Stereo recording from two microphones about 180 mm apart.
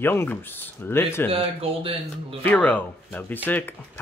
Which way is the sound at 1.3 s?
30° right (ahead or behind).